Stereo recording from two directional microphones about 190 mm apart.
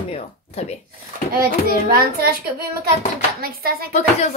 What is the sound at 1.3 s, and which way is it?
A child's voice, 50° right (ahead or behind).